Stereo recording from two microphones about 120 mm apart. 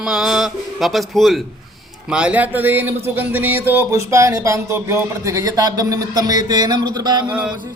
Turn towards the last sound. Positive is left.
turn(degrees=-10)  # may be behind; listen again after turning